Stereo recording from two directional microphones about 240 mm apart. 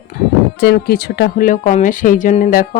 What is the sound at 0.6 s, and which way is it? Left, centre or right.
Speech, left.